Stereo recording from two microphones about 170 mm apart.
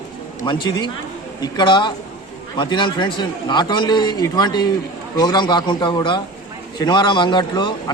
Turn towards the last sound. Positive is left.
turn(degrees=25)  # may be behind; listen again after turning